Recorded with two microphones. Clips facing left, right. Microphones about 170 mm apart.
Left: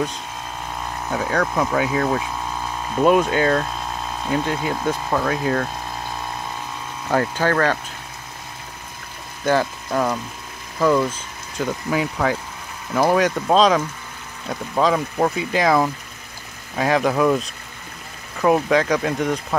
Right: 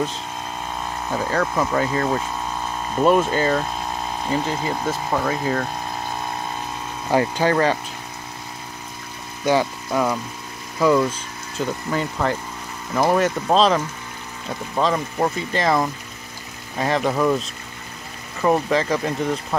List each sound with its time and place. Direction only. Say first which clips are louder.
1.1 s speech: left 1 dB; centre (ahead or behind)
7.1 s speech: right 1 dB; 10° right (ahead or behind)
9.4 s speech: even; 10° right (ahead or behind)